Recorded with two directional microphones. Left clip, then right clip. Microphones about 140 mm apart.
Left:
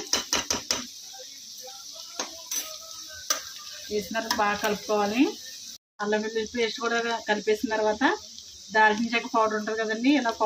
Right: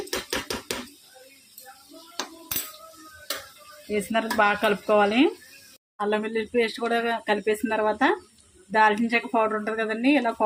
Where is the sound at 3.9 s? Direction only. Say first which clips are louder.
Right 3 dB; 35° right (ahead or behind).